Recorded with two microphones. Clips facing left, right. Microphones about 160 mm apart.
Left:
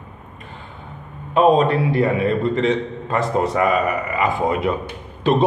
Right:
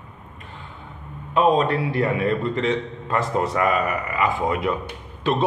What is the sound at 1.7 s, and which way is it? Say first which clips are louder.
A man's voice: left 4 dB; 30° left (ahead or behind).